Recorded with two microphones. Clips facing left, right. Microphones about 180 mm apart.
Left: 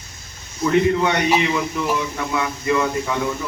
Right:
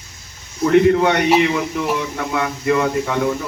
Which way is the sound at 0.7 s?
60° right (ahead or behind).